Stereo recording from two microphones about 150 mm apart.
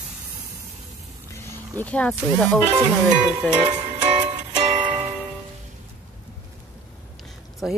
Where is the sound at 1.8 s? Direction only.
10° left (ahead or behind).